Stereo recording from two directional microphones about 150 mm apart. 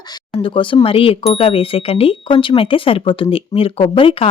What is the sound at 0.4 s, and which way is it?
Speech, 35° left (ahead or behind).